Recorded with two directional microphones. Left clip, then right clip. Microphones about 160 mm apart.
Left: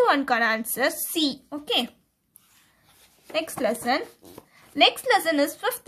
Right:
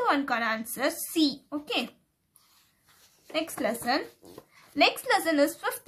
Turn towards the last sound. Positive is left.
turn(degrees=25)  # may be behind; listen again after turning